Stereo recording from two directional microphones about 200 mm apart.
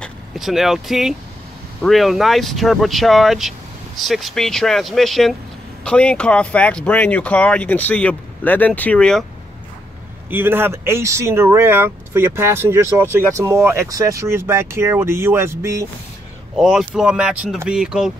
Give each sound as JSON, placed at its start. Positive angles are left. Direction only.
{"t": 0.0, "sound": "speech", "side_deg": 0}
{"t": 10.3, "sound": "speech", "side_deg": -10}
{"t": 16.5, "sound": "speech", "side_deg": 0}